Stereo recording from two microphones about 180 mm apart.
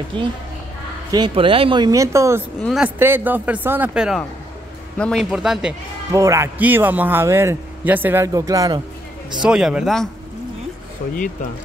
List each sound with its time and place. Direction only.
0.1 s speech: 30° right (ahead or behind)
2.6 s a man's voice: centre (ahead or behind)
4.9 s a man's voice: 5° left (ahead or behind)
6.1 s a man's voice: 15° right (ahead or behind)
9.4 s speech: 5° right (ahead or behind)